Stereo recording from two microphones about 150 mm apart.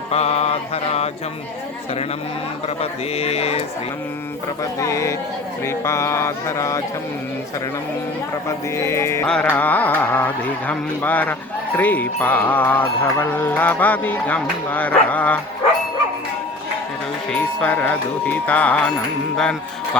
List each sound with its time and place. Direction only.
0.1 s mantra: 45° left (ahead or behind)
2.6 s speech: 45° left (ahead or behind)
4.6 s speech: 20° left (ahead or behind)
8.4 s speech: 20° left (ahead or behind)
9.2 s carnatic music: 5° left (ahead or behind)
17.3 s carnatic music: 10° left (ahead or behind)
19.4 s speech: 5° left (ahead or behind)